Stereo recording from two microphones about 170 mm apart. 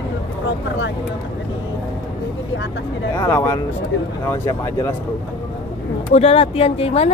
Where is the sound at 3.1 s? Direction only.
15° left (ahead or behind).